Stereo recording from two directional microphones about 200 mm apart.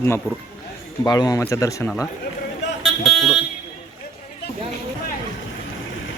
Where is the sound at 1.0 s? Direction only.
20° left (ahead or behind).